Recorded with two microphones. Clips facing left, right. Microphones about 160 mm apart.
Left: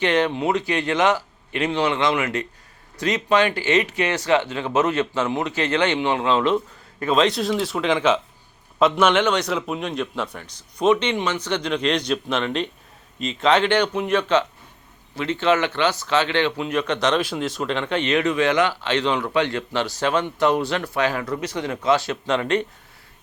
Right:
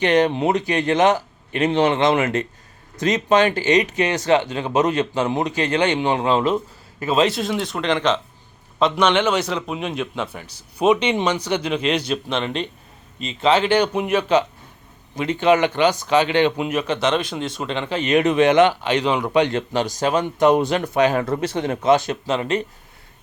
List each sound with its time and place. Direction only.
0.3 s speech: 20° right (ahead or behind)
0.9 s speech: 45° right (ahead or behind)
3.0 s speech: 20° right (ahead or behind)
3.4 s speech: 40° right (ahead or behind)
3.7 s speech: 20° right (ahead or behind)
6.0 s speech: 40° right (ahead or behind)
7.1 s speech: 5° right (ahead or behind)
18.1 s speech: 20° right (ahead or behind)
19.9 s speech: 40° right (ahead or behind)
20.1 s speech: 15° right (ahead or behind)